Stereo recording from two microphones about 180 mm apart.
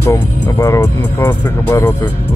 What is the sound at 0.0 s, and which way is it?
Speech, 15° left (ahead or behind).